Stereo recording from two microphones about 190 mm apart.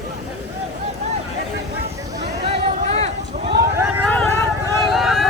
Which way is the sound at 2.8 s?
35° right (ahead or behind).